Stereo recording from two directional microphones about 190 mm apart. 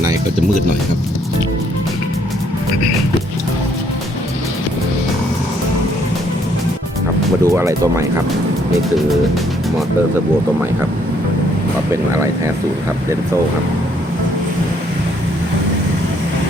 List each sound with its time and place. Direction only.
7.4 s speech: 15° right (ahead or behind)